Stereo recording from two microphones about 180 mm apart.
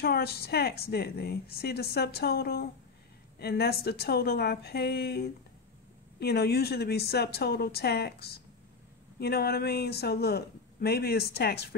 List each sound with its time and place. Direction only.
0.0 s speech: 60° left (ahead or behind)